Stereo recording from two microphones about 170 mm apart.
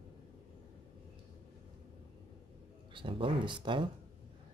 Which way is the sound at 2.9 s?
30° right (ahead or behind).